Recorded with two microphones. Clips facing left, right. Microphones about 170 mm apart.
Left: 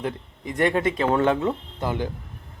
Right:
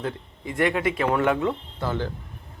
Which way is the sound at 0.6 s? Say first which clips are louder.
Left 1 dB; 25° left (ahead or behind).